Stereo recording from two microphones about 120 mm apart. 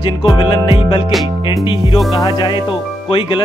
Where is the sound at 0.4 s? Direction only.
40° left (ahead or behind).